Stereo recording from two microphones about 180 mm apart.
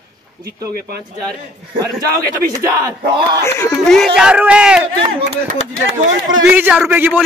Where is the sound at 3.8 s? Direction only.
Centre (ahead or behind).